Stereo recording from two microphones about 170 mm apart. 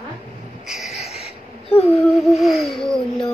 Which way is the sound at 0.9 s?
40° left (ahead or behind).